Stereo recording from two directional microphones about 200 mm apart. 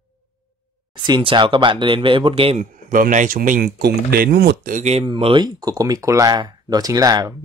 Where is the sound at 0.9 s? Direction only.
25° right (ahead or behind).